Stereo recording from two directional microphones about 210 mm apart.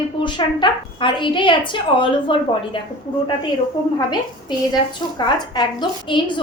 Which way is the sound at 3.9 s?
20° left (ahead or behind).